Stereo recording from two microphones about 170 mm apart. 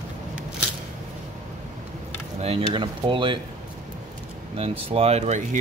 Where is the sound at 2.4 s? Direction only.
35° right (ahead or behind).